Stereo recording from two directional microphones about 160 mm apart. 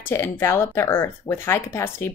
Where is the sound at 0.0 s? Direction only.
15° left (ahead or behind).